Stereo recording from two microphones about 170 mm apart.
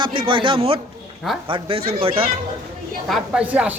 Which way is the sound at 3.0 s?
5° right (ahead or behind).